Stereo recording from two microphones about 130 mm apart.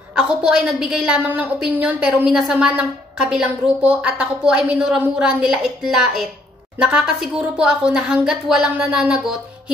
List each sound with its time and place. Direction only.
0.1 s a woman's voice: 5° right (ahead or behind)